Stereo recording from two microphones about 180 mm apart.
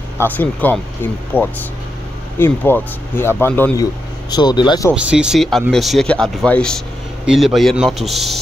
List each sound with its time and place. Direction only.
0.2 s speech: 10° left (ahead or behind)
4.3 s speech: 25° left (ahead or behind)
4.9 s speech: 5° right (ahead or behind)